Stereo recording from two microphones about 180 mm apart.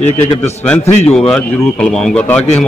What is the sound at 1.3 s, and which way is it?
A man's voice, 5° left (ahead or behind).